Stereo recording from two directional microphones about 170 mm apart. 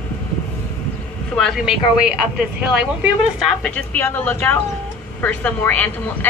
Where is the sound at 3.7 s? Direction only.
10° left (ahead or behind).